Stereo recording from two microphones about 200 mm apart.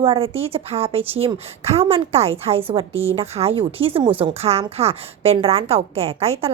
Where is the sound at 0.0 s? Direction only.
25° right (ahead or behind).